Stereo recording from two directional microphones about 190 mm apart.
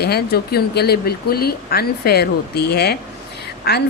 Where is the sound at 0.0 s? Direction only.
55° left (ahead or behind).